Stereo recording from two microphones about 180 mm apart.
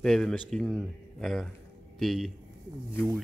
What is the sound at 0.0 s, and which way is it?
Speech, 5° left (ahead or behind).